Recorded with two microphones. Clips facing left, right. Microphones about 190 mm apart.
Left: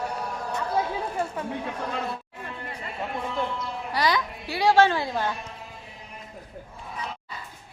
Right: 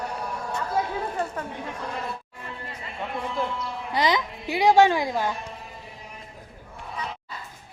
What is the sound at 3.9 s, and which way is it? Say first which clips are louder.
A woman's voice: right 1 dB; 20° right (ahead or behind).